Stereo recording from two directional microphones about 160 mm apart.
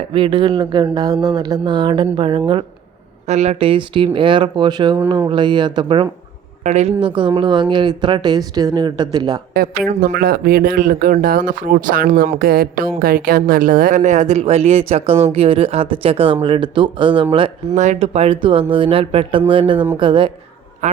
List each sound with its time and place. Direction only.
0.1 s speech: 30° right (ahead or behind)
3.2 s speech: 45° right (ahead or behind)
6.7 s speech: 45° right (ahead or behind); by 9.4 s 25° right (ahead or behind)
10.2 s speech: 65° right (ahead or behind); by 17.2 s 30° right (ahead or behind)
17.7 s speech: 45° right (ahead or behind)
20.8 s quack: 50° right (ahead or behind)